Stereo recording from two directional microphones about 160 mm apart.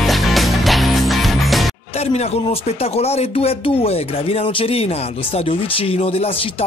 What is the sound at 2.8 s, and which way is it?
Speech, 40° left (ahead or behind).